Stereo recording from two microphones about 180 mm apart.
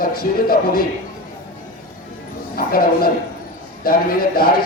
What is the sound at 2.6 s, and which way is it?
A man's voice, 55° left (ahead or behind).